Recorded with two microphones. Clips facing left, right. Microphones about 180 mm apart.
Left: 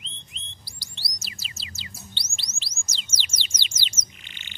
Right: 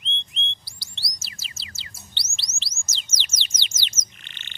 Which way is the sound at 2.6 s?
10° left (ahead or behind).